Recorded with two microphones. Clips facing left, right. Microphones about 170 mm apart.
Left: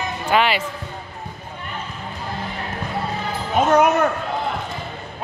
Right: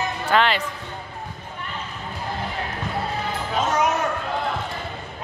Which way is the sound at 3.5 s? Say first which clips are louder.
Left 7 dB; 60° left (ahead or behind).